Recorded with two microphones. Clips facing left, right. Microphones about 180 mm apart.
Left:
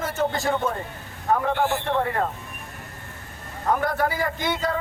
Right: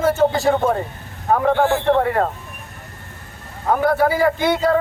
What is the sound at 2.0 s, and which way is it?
Speech, 60° right (ahead or behind).